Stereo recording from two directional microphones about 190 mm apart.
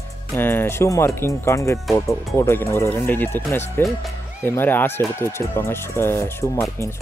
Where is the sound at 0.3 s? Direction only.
10° left (ahead or behind).